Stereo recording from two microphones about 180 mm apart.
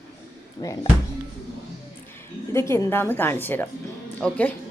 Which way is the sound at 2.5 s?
15° left (ahead or behind).